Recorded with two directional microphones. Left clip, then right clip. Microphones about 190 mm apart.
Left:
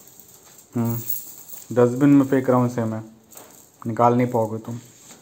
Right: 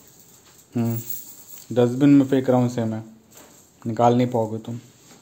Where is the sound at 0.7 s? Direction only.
20° right (ahead or behind).